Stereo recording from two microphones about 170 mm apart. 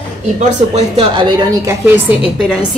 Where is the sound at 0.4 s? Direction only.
40° right (ahead or behind).